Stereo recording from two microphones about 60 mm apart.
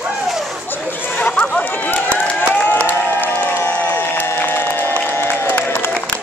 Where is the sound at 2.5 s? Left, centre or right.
Left.